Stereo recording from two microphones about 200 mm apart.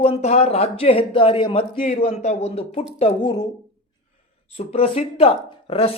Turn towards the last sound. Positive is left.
turn(degrees=30)  # may be behind; listen again after turning